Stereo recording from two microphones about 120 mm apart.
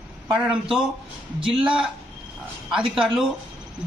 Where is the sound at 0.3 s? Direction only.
5° right (ahead or behind).